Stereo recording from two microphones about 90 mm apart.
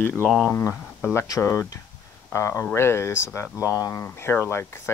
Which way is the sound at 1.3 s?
35° left (ahead or behind).